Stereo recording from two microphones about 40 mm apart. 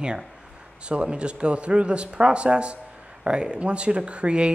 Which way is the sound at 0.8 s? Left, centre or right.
Right.